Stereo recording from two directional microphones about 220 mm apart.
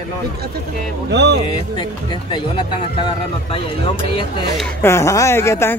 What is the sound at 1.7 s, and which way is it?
Speech, 20° left (ahead or behind).